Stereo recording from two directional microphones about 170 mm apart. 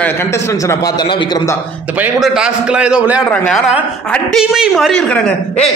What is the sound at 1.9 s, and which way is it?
A man's voice, 10° right (ahead or behind).